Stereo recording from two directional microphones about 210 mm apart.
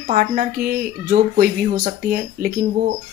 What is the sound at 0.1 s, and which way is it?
Speech, 40° right (ahead or behind).